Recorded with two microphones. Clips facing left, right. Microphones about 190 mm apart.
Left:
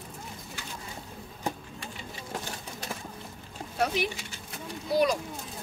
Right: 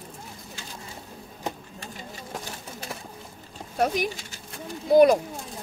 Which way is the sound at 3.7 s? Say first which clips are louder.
Right 4 dB; 45° right (ahead or behind).